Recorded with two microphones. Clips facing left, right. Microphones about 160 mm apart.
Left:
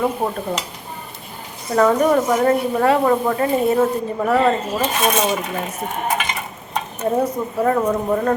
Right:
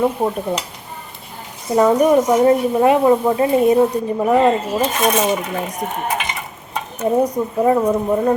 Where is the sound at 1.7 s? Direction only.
15° right (ahead or behind).